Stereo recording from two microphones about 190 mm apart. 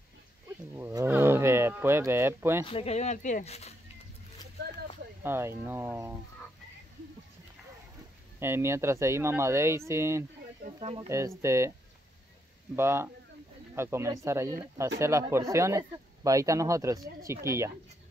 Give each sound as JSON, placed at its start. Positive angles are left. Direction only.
{"t": 0.7, "sound": "cattle", "side_deg": -10}
{"t": 2.6, "sound": "speech", "side_deg": 30}
{"t": 5.2, "sound": "speech", "side_deg": -10}
{"t": 8.4, "sound": "speech", "side_deg": -10}
{"t": 10.8, "sound": "speech", "side_deg": -30}
{"t": 11.1, "sound": "speech", "side_deg": -15}
{"t": 12.7, "sound": "speech", "side_deg": -15}